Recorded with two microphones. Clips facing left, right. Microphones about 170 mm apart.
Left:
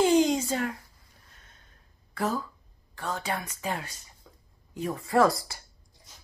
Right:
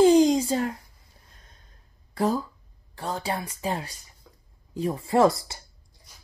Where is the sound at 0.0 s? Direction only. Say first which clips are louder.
Right 5 dB; 35° right (ahead or behind).